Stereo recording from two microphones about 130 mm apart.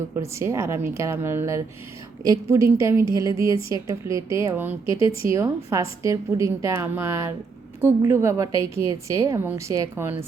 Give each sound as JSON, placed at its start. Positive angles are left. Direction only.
{"t": 0.2, "sound": "a woman's voice", "side_deg": -20}
{"t": 4.9, "sound": "speech", "side_deg": 45}
{"t": 5.3, "sound": "a woman's voice", "side_deg": -20}